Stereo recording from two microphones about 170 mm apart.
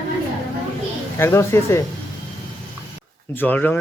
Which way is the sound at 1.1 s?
15° left (ahead or behind).